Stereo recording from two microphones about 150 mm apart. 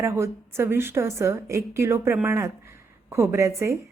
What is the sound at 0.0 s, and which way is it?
A woman's voice, 20° right (ahead or behind).